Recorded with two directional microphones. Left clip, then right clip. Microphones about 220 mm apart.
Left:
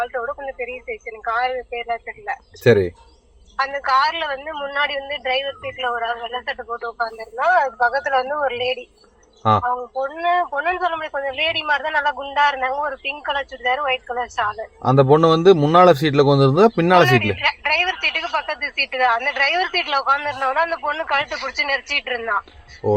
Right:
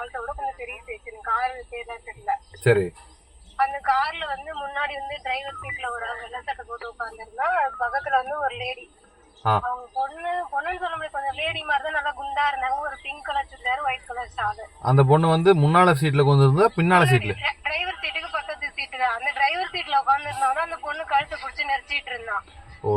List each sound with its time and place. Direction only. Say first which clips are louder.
1.3 s speech: left 4 dB; 45° left (ahead or behind)
22.8 s speech: left 5 dB; 30° left (ahead or behind)